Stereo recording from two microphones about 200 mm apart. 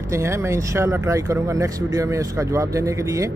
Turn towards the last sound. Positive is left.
turn(degrees=-15)  # may be behind; listen again after turning